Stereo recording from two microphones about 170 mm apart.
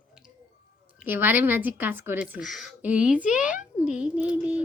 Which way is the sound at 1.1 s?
10° right (ahead or behind).